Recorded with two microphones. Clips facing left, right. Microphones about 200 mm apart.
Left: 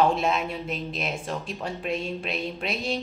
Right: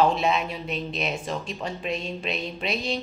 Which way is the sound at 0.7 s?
5° left (ahead or behind).